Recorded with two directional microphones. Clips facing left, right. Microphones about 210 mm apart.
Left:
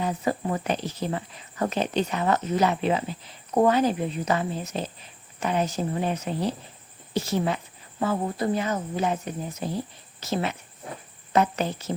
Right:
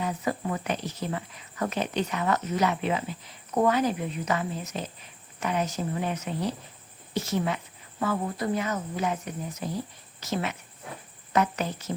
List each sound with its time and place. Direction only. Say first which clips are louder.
0.0 s a woman's voice: left 3 dB; 30° left (ahead or behind)